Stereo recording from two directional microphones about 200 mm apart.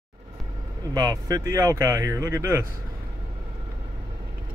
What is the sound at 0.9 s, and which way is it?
Speech, 15° right (ahead or behind).